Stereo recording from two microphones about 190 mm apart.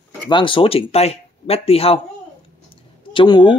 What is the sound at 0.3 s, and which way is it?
Speech, 25° left (ahead or behind).